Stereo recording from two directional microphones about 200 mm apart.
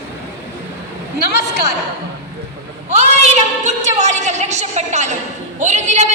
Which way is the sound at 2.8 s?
35° right (ahead or behind).